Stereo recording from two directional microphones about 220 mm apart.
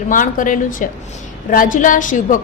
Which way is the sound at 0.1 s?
35° left (ahead or behind).